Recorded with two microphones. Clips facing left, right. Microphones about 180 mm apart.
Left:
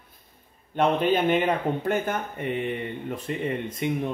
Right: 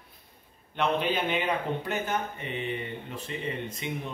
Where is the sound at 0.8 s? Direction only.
45° left (ahead or behind).